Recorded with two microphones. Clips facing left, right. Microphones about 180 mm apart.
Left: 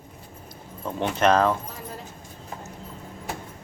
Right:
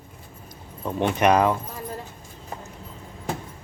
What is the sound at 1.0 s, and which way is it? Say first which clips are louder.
Mechanisms: right 1 dB; 15° right (ahead or behind).